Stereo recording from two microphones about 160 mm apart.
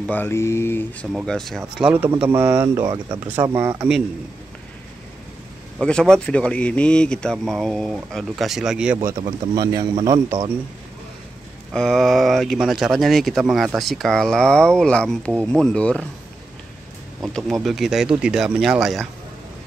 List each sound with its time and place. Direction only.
0.0 s speech: 10° left (ahead or behind)
1.2 s speech: 5° left (ahead or behind)
1.8 s speech: 10° right (ahead or behind)
5.8 s speech: 5° left (ahead or behind)
8.9 s speech: 25° right (ahead or behind)
11.7 s speech: 5° left (ahead or behind)
17.2 s speech: centre (ahead or behind)